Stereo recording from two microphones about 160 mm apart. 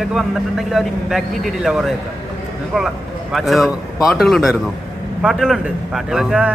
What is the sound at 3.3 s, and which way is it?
A man's voice, centre (ahead or behind).